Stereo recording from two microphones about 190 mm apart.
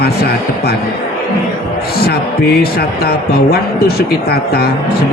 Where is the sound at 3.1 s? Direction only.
55° left (ahead or behind).